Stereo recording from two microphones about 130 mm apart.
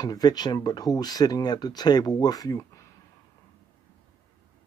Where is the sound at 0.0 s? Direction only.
30° left (ahead or behind).